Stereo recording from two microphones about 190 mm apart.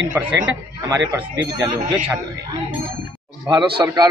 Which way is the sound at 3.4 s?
25° right (ahead or behind).